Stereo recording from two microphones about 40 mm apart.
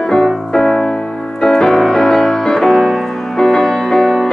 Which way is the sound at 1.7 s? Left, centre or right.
Centre.